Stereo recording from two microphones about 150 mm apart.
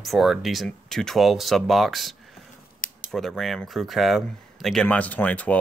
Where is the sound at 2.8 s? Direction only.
65° left (ahead or behind).